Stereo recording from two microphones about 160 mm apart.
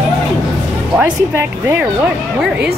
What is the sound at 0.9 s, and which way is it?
Speech, 10° right (ahead or behind).